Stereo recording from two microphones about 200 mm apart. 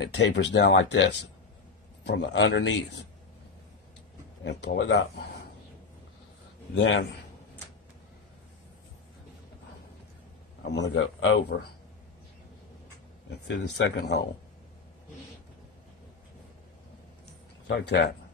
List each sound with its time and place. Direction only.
0.0 s speech: 60° left (ahead or behind)
2.0 s speech: 60° left (ahead or behind)
4.4 s speech: 60° left (ahead or behind)
6.8 s a man's voice: 70° left (ahead or behind)
10.6 s speech: 60° left (ahead or behind)
13.5 s speech: 60° left (ahead or behind)
17.6 s speech: 60° left (ahead or behind)